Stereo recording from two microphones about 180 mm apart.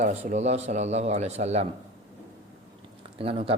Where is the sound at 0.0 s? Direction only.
40° right (ahead or behind).